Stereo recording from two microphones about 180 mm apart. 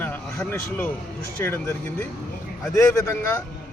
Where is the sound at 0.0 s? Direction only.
10° left (ahead or behind).